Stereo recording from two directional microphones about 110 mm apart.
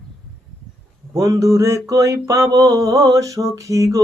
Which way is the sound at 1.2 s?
30° right (ahead or behind).